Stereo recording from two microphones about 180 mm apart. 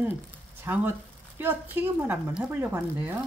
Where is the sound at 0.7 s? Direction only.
15° right (ahead or behind).